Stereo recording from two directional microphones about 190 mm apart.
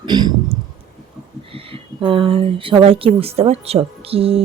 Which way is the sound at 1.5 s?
30° right (ahead or behind).